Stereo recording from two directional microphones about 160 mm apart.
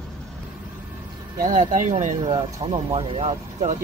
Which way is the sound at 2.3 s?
35° right (ahead or behind).